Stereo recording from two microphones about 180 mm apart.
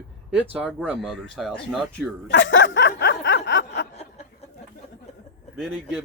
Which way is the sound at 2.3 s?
90° left.